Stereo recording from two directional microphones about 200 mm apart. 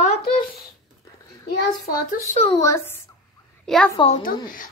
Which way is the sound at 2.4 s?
15° left (ahead or behind).